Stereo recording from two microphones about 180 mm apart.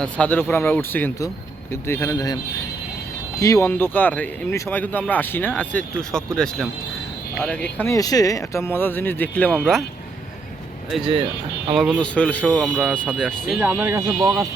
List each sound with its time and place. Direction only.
0.0 s speech: 10° left (ahead or behind)
10.9 s speech: centre (ahead or behind)
13.6 s speech: 10° right (ahead or behind)